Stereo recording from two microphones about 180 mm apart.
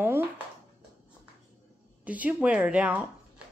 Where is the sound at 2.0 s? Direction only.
10° right (ahead or behind).